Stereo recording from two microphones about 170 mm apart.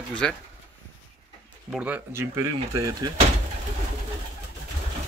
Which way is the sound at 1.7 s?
5° right (ahead or behind).